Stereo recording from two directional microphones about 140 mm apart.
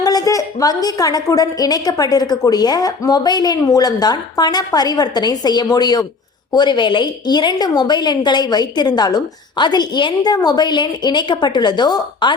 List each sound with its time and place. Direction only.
0.0 s a woman's voice: 25° left (ahead or behind)